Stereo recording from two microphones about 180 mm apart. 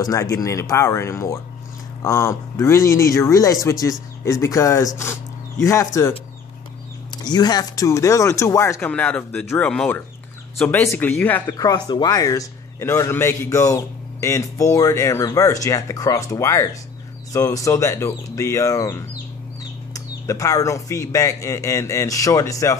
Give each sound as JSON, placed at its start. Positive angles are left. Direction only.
{"t": 0.0, "sound": "a man's voice", "side_deg": 20}
{"t": 7.2, "sound": "a man's voice", "side_deg": 20}
{"t": 11.5, "sound": "a man's voice", "side_deg": 20}